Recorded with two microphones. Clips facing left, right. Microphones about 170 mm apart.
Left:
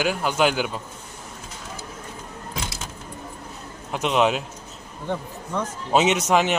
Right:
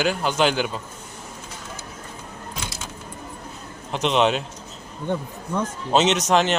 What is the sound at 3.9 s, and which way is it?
Speech, 5° left (ahead or behind).